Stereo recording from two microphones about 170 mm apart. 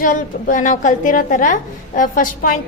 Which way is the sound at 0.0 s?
50° left (ahead or behind).